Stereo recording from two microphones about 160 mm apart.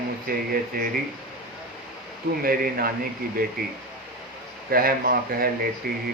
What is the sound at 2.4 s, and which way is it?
Speech, 65° right (ahead or behind).